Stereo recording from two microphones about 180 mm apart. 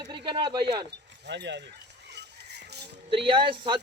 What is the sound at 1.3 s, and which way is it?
Speech, 75° right (ahead or behind).